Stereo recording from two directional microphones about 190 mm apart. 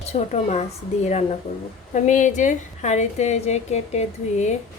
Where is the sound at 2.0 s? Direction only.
40° left (ahead or behind).